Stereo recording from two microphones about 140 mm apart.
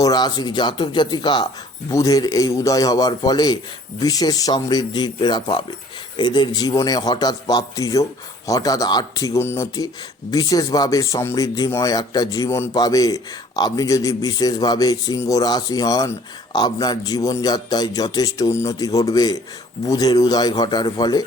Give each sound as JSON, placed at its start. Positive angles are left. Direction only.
{"t": 0.0, "sound": "a man's voice", "side_deg": 30}